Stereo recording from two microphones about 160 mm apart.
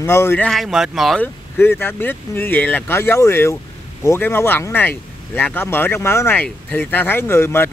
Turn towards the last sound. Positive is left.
turn(degrees=15)  # may be behind; listen again after turning